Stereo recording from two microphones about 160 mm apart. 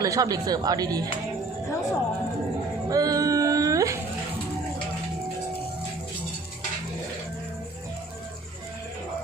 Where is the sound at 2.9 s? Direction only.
20° right (ahead or behind).